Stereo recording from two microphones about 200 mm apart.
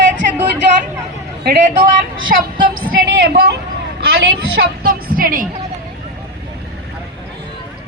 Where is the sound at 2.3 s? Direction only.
45° right (ahead or behind).